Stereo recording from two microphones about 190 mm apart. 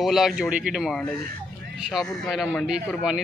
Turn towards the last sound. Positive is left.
turn(degrees=-5)  # may be behind; listen again after turning